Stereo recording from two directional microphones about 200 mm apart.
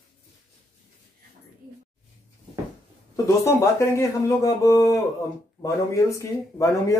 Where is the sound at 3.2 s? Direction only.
15° left (ahead or behind).